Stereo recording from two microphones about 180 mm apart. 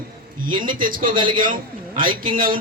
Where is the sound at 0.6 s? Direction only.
50° right (ahead or behind).